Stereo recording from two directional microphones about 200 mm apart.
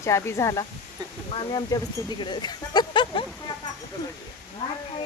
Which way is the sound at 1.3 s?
25° left (ahead or behind).